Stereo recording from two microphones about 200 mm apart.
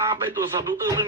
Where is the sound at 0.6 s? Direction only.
15° right (ahead or behind).